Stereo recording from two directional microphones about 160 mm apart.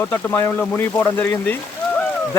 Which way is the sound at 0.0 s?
15° left (ahead or behind).